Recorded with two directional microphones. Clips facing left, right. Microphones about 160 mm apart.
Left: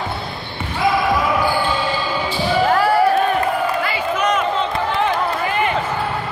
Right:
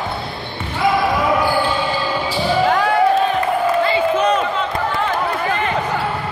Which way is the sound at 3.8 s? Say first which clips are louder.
Right 4 dB; 30° right (ahead or behind).